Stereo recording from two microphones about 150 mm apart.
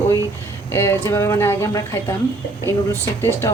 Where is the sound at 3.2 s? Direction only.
15° left (ahead or behind).